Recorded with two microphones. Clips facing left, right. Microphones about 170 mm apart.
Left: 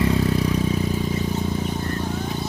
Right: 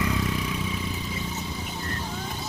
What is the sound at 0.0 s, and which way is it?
Vehicle, 35° left (ahead or behind).